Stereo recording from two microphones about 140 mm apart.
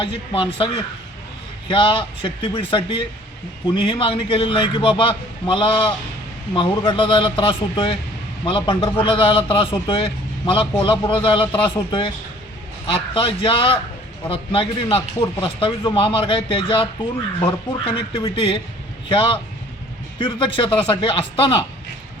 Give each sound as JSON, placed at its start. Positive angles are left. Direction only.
{"t": 0.0, "sound": "a man's voice", "side_deg": 40}